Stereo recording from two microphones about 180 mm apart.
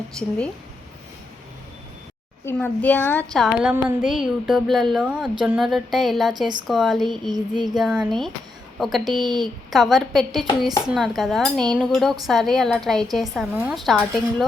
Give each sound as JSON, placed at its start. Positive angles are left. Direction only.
{"t": 0.2, "sound": "speech", "side_deg": 5}
{"t": 2.4, "sound": "a woman's voice", "side_deg": 10}
{"t": 3.3, "sound": "speech", "side_deg": -5}
{"t": 7.3, "sound": "child singing", "side_deg": -20}
{"t": 7.8, "sound": "speech", "side_deg": 0}